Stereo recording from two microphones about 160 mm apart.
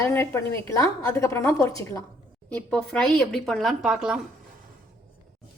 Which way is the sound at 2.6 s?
5° left (ahead or behind).